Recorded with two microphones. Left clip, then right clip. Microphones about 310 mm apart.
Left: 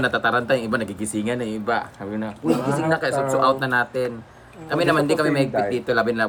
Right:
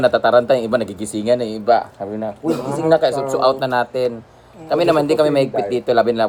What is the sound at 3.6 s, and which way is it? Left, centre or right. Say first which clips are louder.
Speech: right 4 dB; centre.